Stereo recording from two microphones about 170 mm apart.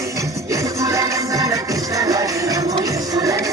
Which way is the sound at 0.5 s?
20° right (ahead or behind).